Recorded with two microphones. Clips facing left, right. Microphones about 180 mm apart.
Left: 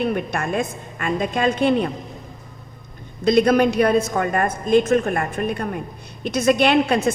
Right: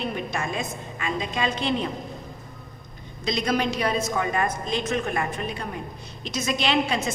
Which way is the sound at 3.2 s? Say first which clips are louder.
Left 10 dB; 55° left (ahead or behind).